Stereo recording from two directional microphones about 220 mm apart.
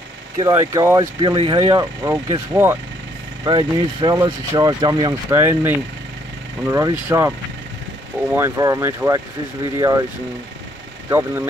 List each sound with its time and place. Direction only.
0.4 s speech: 15° right (ahead or behind)
8.4 s speech: 15° right (ahead or behind)
11.1 s speech: 10° right (ahead or behind)